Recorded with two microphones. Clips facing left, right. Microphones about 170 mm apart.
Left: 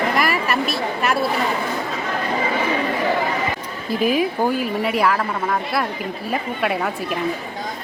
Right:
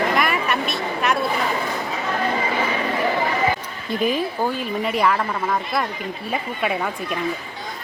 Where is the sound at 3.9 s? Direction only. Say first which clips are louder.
Left 3 dB; 5° left (ahead or behind).